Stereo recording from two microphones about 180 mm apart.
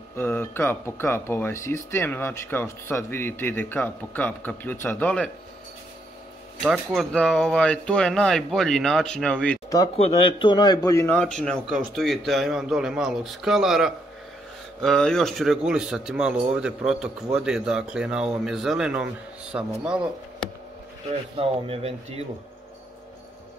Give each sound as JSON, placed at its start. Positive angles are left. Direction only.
{"t": 0.1, "sound": "speech", "side_deg": 10}
{"t": 6.6, "sound": "speech", "side_deg": 0}
{"t": 9.9, "sound": "speech", "side_deg": 35}
{"t": 21.4, "sound": "speech", "side_deg": -35}